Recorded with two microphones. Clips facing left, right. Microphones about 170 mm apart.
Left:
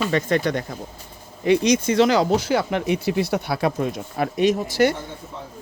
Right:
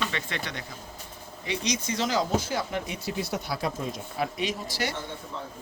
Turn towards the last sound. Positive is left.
turn(degrees=50)  # may be behind; listen again after turning